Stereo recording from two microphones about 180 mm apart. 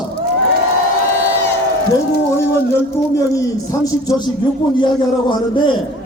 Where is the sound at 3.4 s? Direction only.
20° left (ahead or behind).